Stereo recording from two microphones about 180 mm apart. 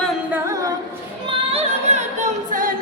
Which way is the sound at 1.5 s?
40° right (ahead or behind).